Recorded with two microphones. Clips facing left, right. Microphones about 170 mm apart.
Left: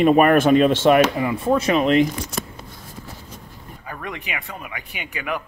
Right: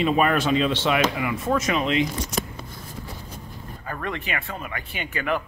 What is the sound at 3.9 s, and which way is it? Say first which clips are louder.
Speech: right 2 dB; 10° left (ahead or behind).